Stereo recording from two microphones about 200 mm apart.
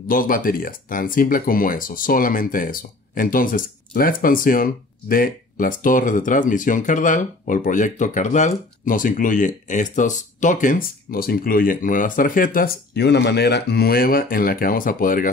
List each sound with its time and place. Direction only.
0.1 s speech: 45° left (ahead or behind)